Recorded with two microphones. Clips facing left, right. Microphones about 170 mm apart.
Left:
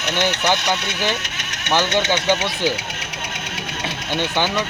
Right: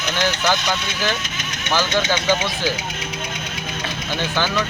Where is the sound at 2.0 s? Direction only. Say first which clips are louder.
Left 1 dB; 65° left (ahead or behind).